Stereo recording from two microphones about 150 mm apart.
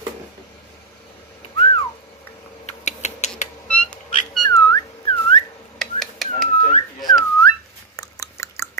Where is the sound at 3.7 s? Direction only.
10° left (ahead or behind).